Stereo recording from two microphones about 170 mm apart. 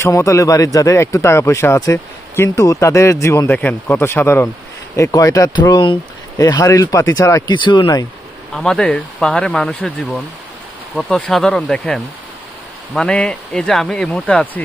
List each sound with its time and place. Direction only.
0.0 s speech: 15° left (ahead or behind)
8.5 s speech: centre (ahead or behind)